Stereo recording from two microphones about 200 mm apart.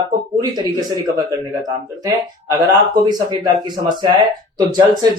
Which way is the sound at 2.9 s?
20° right (ahead or behind).